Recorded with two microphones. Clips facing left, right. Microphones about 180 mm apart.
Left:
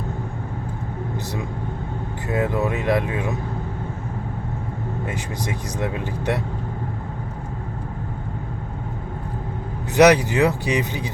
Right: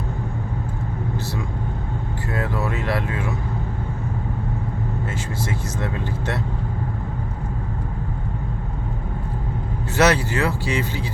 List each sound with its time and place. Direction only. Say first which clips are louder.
2.3 s speech: left 4 dB; 20° left (ahead or behind)
5.0 s speech: even; 15° left (ahead or behind)
9.9 s speech: left 5 dB; 15° left (ahead or behind)